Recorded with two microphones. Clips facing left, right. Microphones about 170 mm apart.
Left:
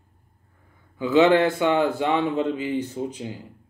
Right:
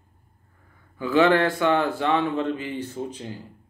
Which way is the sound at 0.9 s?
20° left (ahead or behind).